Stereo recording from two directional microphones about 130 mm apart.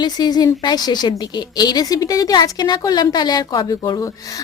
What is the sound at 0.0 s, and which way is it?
A woman's voice, 30° left (ahead or behind).